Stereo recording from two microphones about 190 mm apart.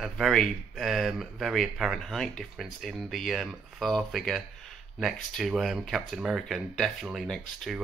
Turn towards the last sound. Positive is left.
turn(degrees=0)  # may be behind; listen again after turning